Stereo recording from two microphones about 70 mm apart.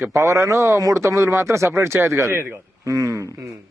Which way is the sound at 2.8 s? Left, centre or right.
Right.